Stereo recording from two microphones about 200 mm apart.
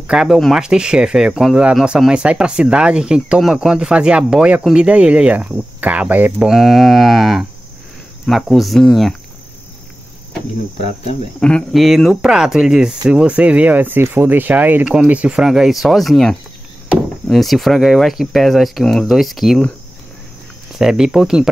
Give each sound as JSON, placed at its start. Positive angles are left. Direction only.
{"t": 0.0, "sound": "speech", "side_deg": -5}
{"t": 10.8, "sound": "speech", "side_deg": 30}
{"t": 11.3, "sound": "speech", "side_deg": 5}
{"t": 20.7, "sound": "speech", "side_deg": 0}